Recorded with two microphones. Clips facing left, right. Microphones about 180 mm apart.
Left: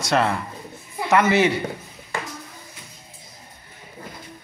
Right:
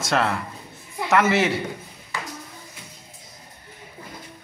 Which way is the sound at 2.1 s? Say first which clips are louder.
Left 3 dB; 50° left (ahead or behind).